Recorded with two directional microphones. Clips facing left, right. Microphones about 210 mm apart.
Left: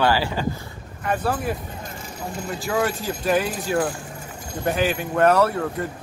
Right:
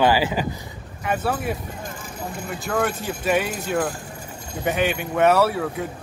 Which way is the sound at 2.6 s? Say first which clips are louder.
Even; centre (ahead or behind).